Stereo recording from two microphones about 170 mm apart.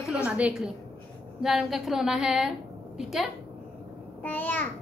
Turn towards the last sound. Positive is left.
turn(degrees=10)  # may be behind; listen again after turning